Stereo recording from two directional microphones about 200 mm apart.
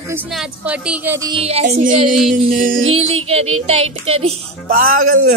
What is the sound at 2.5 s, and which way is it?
Speech, 45° right (ahead or behind).